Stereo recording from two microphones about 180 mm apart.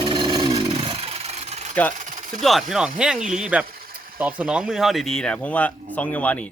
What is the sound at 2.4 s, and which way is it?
Speech, centre (ahead or behind).